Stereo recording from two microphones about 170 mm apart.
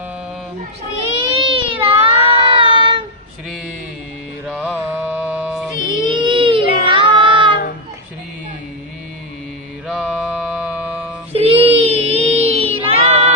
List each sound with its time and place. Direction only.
1.3 s a sound: 30° right (ahead or behind)
4.4 s mantra: 5° right (ahead or behind)
5.9 s a sound: 30° right (ahead or behind)
6.8 s child singing: 30° right (ahead or behind)
9.8 s mantra: 5° right (ahead or behind)
11.3 s child singing: 35° right (ahead or behind)